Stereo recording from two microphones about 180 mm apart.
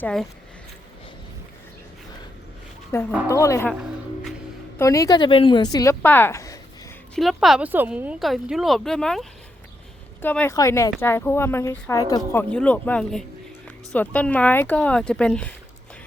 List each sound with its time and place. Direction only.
0.0 s a woman's voice: 5° left (ahead or behind)
2.9 s speech: 15° left (ahead or behind)
4.8 s a woman's voice: 15° left (ahead or behind)
7.2 s a woman's voice: centre (ahead or behind)